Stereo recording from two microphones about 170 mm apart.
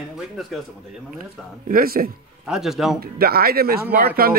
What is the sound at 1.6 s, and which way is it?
Speech, 60° right (ahead or behind).